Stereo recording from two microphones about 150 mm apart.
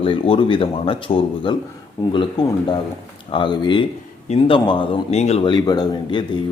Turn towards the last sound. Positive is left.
turn(degrees=30)  # may be behind; listen again after turning